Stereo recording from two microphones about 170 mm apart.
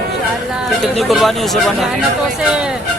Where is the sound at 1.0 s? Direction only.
Centre (ahead or behind).